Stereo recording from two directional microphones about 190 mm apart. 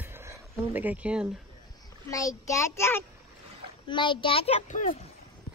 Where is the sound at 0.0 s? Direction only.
10° right (ahead or behind).